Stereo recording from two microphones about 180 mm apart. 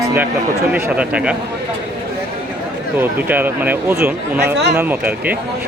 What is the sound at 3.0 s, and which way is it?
Speech, 10° right (ahead or behind).